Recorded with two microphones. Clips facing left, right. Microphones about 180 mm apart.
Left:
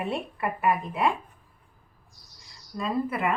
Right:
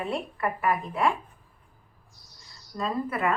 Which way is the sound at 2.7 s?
10° left (ahead or behind).